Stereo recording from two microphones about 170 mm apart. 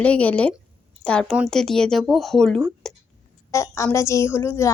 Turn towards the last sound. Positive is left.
turn(degrees=15)  # may be behind; listen again after turning